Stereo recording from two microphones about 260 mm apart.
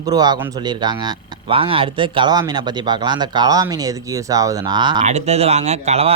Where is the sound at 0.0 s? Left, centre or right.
Centre.